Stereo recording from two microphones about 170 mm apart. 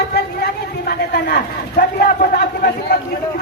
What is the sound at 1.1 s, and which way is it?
A man's voice, 65° left (ahead or behind).